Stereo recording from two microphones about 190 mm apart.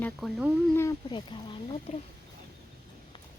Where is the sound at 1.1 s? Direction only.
25° left (ahead or behind).